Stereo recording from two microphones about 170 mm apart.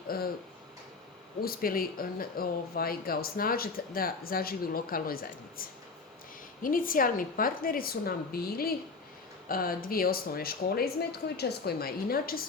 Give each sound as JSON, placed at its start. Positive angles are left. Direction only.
{"t": 0.1, "sound": "speech", "side_deg": 60}
{"t": 1.4, "sound": "speech", "side_deg": 60}